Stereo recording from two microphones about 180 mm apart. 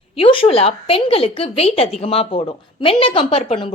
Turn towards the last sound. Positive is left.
turn(degrees=35)  # may be behind; listen again after turning